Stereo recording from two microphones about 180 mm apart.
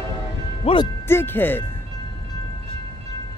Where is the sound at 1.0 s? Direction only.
10° left (ahead or behind).